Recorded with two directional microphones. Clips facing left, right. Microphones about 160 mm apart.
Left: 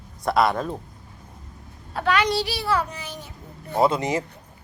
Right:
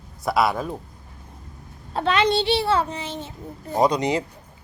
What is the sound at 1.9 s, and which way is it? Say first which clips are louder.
A child's voice: right 2 dB; 25° right (ahead or behind).